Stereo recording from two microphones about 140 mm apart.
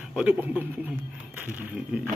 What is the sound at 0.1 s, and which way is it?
Speech, 10° right (ahead or behind).